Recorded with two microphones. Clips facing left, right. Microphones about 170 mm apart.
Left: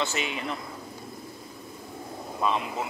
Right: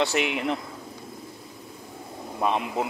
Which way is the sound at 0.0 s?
65° right (ahead or behind).